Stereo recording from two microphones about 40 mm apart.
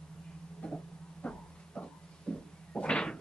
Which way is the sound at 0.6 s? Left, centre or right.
Left.